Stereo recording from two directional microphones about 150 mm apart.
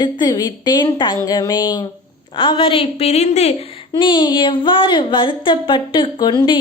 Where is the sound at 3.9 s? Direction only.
30° left (ahead or behind).